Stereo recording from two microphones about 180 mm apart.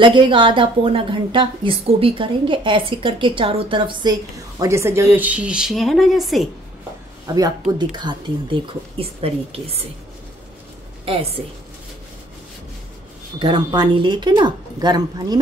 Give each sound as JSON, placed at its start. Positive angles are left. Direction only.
{"t": 0.0, "sound": "a woman's voice", "side_deg": -25}
{"t": 7.2, "sound": "a woman's voice", "side_deg": -20}
{"t": 11.1, "sound": "speech", "side_deg": -30}
{"t": 13.4, "sound": "a woman's voice", "side_deg": -25}